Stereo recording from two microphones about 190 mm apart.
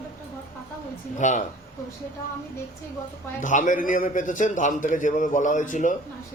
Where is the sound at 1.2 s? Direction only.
40° left (ahead or behind).